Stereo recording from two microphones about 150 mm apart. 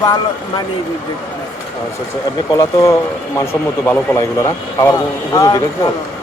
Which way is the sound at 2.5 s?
20° left (ahead or behind).